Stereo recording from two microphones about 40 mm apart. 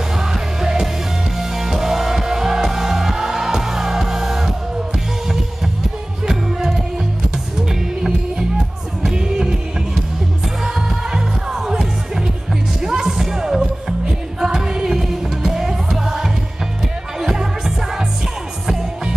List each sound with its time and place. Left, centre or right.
0.2 s music: centre
6.2 s music: centre
10.6 s music: centre